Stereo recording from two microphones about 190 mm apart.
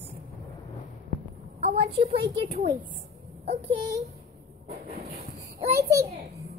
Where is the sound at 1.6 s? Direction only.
35° right (ahead or behind).